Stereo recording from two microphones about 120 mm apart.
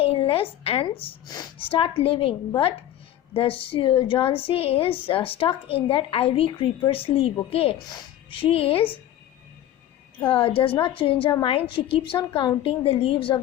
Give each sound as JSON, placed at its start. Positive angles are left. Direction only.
{"t": 0.0, "sound": "a woman's voice", "side_deg": 50}
{"t": 3.3, "sound": "a woman's voice", "side_deg": 50}
{"t": 7.9, "sound": "speech", "side_deg": 40}
{"t": 10.2, "sound": "a woman's voice", "side_deg": 45}